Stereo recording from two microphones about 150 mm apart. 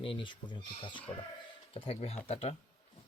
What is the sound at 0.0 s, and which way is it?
Speech, 35° left (ahead or behind).